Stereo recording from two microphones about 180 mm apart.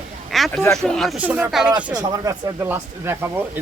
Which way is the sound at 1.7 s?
25° right (ahead or behind).